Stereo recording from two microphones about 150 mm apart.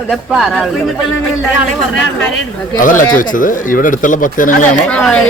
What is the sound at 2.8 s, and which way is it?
Speech, 60° left (ahead or behind).